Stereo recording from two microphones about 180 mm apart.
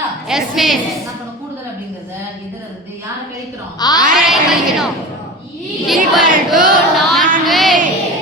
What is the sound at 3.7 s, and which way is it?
Speech, 20° left (ahead or behind).